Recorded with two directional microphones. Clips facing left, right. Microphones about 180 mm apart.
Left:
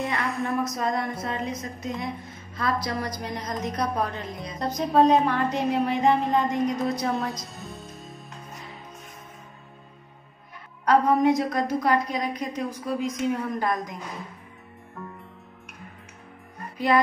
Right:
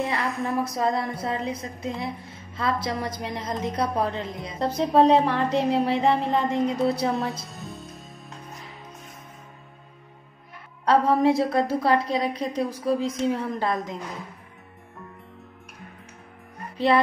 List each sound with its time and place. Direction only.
0.2 s a woman's voice: centre (ahead or behind)
0.7 s a woman's voice: 30° right (ahead or behind)
7.1 s a woman's voice: centre (ahead or behind)
7.4 s music: centre (ahead or behind)
10.9 s a woman's voice: 30° right (ahead or behind)
16.7 s music: 30° right (ahead or behind)